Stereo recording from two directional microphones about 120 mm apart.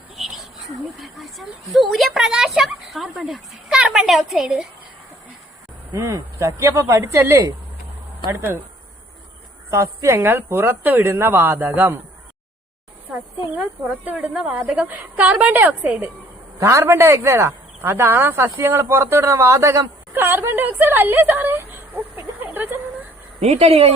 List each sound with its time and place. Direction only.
0.2 s a sound: 5° right (ahead or behind)
0.9 s speech: centre (ahead or behind)
5.9 s a woman's voice: 25° right (ahead or behind)
9.6 s a woman's voice: 25° right (ahead or behind)
13.6 s speech: 10° right (ahead or behind)
16.6 s speech: 25° right (ahead or behind)
23.4 s speech: 55° right (ahead or behind)